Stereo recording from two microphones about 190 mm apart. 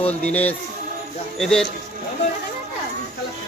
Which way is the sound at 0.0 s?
10° left (ahead or behind).